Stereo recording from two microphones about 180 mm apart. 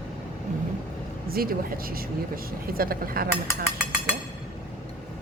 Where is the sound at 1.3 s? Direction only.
55° right (ahead or behind).